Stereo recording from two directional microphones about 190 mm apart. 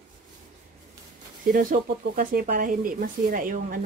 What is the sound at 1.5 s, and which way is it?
Speech, 50° right (ahead or behind).